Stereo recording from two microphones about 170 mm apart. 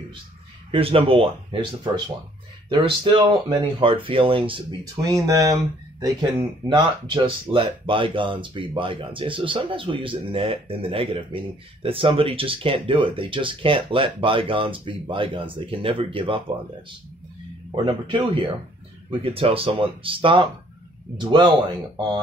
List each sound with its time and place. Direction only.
0.7 s speech: 35° right (ahead or behind)
2.7 s speech: 30° right (ahead or behind)
6.7 s speech: 30° right (ahead or behind)
17.6 s speech: 30° right (ahead or behind)